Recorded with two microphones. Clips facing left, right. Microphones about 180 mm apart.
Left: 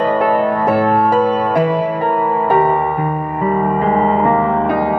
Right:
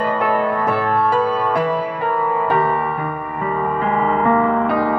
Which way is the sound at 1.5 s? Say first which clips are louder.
Left 4 dB; 30° left (ahead or behind).